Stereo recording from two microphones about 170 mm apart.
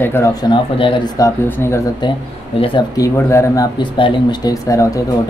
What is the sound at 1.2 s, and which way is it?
Speech, 15° left (ahead or behind).